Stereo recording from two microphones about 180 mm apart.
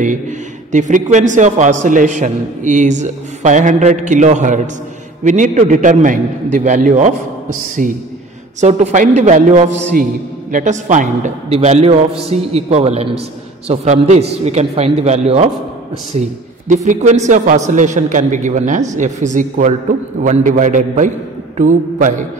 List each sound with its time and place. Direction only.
0.7 s a man's voice: 45° right (ahead or behind)